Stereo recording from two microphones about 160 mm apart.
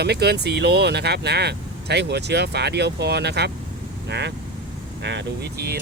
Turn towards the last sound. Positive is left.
turn(degrees=-80)